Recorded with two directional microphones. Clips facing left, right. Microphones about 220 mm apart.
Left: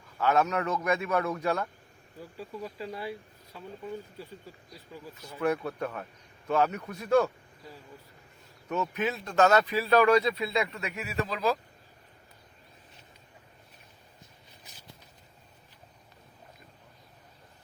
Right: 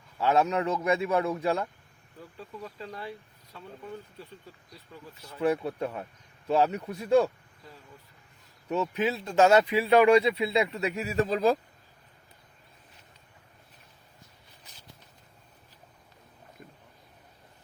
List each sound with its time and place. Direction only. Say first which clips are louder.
0.2 s a man's voice: right 1 dB; 30° right (ahead or behind)
2.4 s speech: left 3 dB; 10° left (ahead or behind)
5.4 s a man's voice: right 2 dB; 25° right (ahead or behind)
6.5 s a man's voice: right 2 dB; 30° right (ahead or behind)
8.7 s a man's voice: right 3 dB; 30° right (ahead or behind)
9.4 s speech: right 2 dB; 10° right (ahead or behind)
9.7 s a man's voice: right 3 dB; 25° right (ahead or behind); by 11.5 s 45° right (ahead or behind)